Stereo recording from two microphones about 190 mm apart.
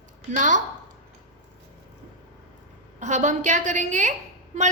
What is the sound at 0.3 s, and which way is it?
Speech, 40° right (ahead or behind).